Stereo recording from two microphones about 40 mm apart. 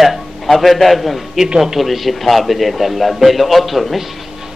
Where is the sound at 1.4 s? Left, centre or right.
Centre.